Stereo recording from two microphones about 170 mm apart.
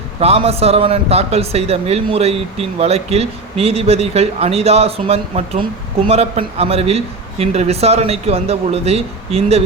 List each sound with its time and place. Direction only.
0.2 s a man's voice: 35° right (ahead or behind)